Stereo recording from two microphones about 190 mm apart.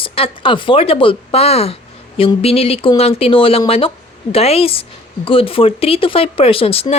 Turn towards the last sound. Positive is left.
turn(degrees=30)  # may be behind; listen again after turning